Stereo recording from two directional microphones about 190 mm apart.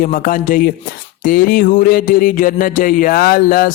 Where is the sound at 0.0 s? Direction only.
45° left (ahead or behind).